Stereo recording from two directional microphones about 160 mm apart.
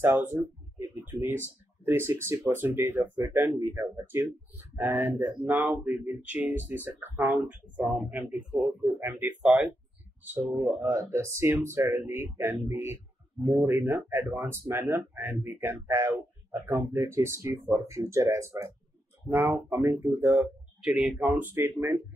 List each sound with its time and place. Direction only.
0.0 s speech: 15° right (ahead or behind)
9.4 s speech: 5° right (ahead or behind)